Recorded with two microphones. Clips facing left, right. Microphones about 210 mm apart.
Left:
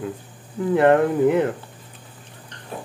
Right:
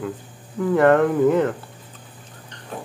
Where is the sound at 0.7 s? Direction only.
20° left (ahead or behind).